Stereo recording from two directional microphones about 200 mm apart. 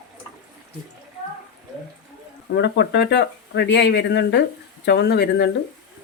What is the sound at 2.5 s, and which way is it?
Speech, 55° left (ahead or behind).